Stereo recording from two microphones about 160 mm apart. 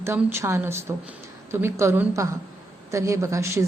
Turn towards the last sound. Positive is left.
turn(degrees=-20)  # may be behind; listen again after turning